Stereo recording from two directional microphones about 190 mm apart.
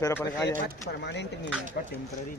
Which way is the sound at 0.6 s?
65° left (ahead or behind).